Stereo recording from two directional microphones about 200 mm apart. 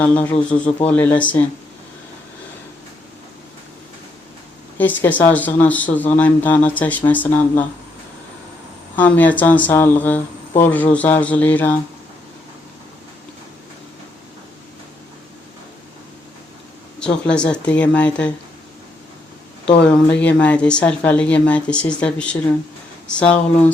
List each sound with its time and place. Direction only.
0.0 s speech: 10° left (ahead or behind)
4.8 s speech: 10° left (ahead or behind)
9.0 s speech: 10° left (ahead or behind)
17.0 s speech: 5° left (ahead or behind)
19.6 s speech: 5° left (ahead or behind)